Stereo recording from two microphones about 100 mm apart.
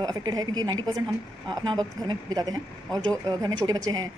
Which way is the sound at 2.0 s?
45° right (ahead or behind).